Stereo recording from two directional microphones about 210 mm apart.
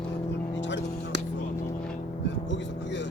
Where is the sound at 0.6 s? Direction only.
60° left (ahead or behind).